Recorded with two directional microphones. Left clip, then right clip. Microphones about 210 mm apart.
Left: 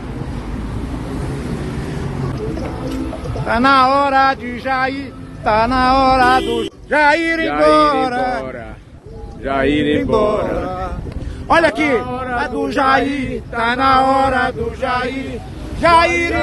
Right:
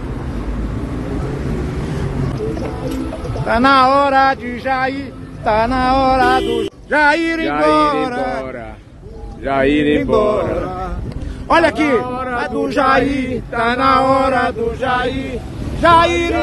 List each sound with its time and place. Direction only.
2.3 s music: 5° right (ahead or behind)
3.4 s speech: centre (ahead or behind)
5.4 s mantra: 15° left (ahead or behind)
7.7 s a sound: 25° left (ahead or behind)
9.4 s speech: 15° right (ahead or behind)
9.9 s mantra: 15° left (ahead or behind)
10.6 s speech: 50° left (ahead or behind)
11.4 s speech: centre (ahead or behind)
12.1 s speech: 20° right (ahead or behind)
12.4 s mantra: 10° left (ahead or behind)
15.8 s mantra: 10° left (ahead or behind)